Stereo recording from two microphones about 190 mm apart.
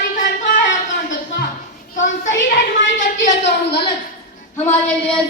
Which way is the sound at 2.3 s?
75° left (ahead or behind).